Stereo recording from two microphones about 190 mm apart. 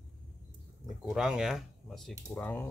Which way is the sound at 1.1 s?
5° right (ahead or behind).